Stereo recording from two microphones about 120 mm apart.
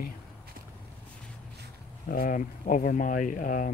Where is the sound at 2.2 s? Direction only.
90° left.